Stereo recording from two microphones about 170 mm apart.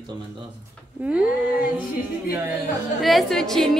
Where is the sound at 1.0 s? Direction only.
5° right (ahead or behind).